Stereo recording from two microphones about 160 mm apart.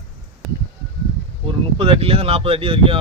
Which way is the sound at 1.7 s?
35° right (ahead or behind).